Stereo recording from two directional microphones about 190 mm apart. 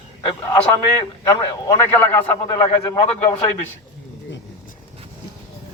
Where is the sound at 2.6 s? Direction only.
20° left (ahead or behind).